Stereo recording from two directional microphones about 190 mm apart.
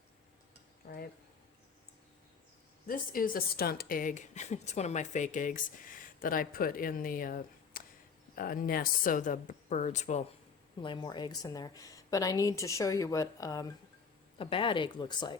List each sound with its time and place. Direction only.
0.8 s speech: 55° left (ahead or behind)
2.8 s speech: 50° left (ahead or behind)
10.8 s a woman's voice: 25° left (ahead or behind)